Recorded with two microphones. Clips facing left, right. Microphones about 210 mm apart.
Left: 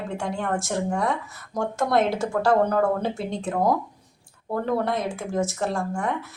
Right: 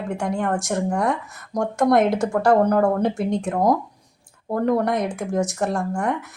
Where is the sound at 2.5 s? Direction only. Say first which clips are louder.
Right 3 dB; 15° right (ahead or behind).